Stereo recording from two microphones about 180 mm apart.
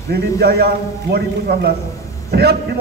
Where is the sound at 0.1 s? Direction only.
65° right (ahead or behind).